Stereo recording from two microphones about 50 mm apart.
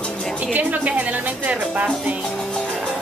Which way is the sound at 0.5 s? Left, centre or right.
Right.